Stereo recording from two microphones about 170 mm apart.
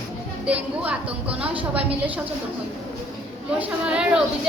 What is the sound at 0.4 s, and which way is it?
A woman's voice, 5° right (ahead or behind).